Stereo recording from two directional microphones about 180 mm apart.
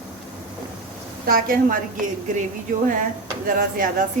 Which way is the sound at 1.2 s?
50° right (ahead or behind).